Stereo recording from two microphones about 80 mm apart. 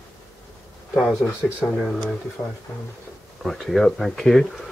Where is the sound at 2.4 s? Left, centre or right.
Left.